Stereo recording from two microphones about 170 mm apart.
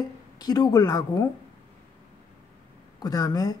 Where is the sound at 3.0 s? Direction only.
20° left (ahead or behind).